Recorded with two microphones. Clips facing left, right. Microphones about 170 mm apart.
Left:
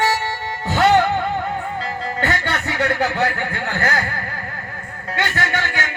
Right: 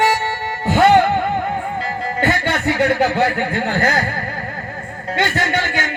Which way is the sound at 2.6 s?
15° right (ahead or behind).